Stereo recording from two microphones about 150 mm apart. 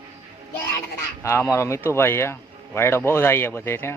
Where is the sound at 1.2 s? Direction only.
15° left (ahead or behind).